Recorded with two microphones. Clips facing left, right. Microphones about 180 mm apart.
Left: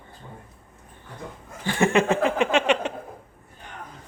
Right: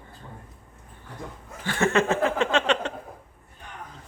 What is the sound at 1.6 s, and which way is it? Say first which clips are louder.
Chuckle: left 2 dB; 15° left (ahead or behind).